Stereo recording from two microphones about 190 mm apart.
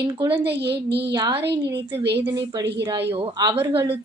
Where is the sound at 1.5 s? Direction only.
60° right (ahead or behind).